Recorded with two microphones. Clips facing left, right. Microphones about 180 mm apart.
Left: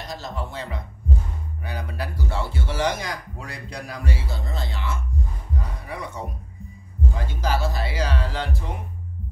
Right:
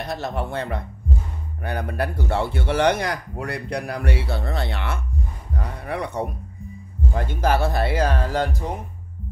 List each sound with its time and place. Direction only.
0.0 s speech: 60° right (ahead or behind)
5.6 s a sound: 65° right (ahead or behind)
7.2 s speech: 55° right (ahead or behind)